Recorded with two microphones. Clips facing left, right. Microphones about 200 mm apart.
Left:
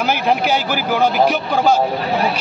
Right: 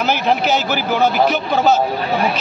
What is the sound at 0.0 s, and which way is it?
A man's voice, 10° left (ahead or behind).